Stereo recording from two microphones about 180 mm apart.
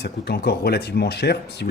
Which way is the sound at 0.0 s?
65° left (ahead or behind).